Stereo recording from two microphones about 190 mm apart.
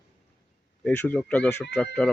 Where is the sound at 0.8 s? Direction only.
5° left (ahead or behind).